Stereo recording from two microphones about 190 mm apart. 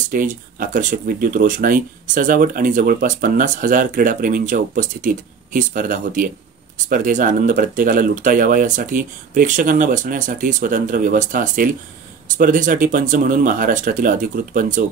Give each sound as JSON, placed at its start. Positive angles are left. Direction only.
{"t": 0.1, "sound": "speech", "side_deg": -45}